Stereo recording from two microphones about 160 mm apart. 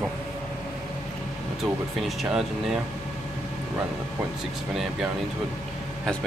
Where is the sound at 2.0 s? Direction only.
Centre (ahead or behind).